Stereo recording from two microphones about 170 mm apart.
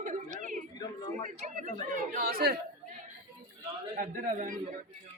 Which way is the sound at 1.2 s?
50° right (ahead or behind).